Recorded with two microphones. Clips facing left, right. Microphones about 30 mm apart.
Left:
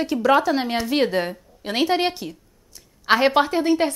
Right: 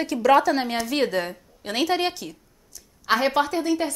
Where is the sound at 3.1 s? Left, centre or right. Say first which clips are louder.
Left 4 dB; left.